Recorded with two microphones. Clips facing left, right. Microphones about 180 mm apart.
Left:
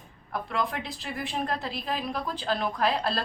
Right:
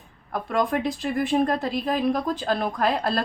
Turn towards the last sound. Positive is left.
turn(degrees=-50)  # may be behind; listen again after turning